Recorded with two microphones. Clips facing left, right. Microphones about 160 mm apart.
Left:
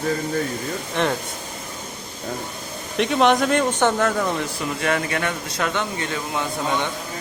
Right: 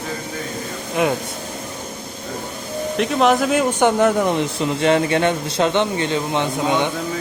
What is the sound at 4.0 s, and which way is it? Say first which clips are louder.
Speech: right 5 dB; 20° right (ahead or behind).